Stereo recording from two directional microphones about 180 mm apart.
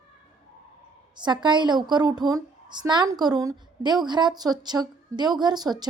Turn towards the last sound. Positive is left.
turn(degrees=-20)  # may be behind; listen again after turning